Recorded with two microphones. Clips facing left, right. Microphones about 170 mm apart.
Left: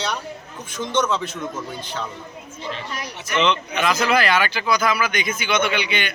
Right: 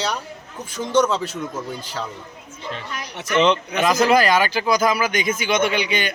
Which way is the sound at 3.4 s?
40° right (ahead or behind).